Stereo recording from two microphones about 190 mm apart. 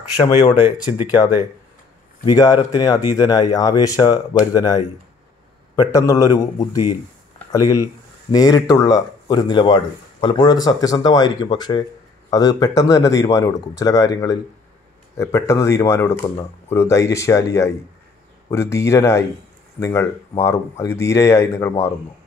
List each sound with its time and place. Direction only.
0.2 s speech: 25° left (ahead or behind)
2.2 s speech: 20° left (ahead or behind)